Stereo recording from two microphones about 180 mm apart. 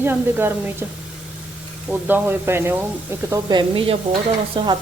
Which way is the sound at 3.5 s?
30° right (ahead or behind).